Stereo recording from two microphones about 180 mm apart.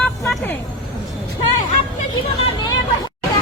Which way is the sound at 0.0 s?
5° left (ahead or behind).